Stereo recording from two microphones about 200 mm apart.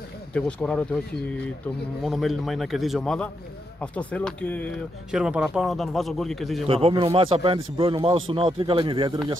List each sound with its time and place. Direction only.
0.3 s a man's voice: 5° left (ahead or behind)
2.0 s a man's voice: centre (ahead or behind)
5.1 s a man's voice: 5° right (ahead or behind)
6.7 s speech: 25° right (ahead or behind)